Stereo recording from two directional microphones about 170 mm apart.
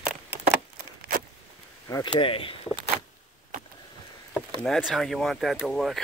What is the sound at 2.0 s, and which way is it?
Speech, 30° left (ahead or behind).